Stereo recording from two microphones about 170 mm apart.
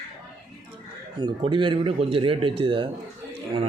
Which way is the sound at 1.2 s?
30° right (ahead or behind).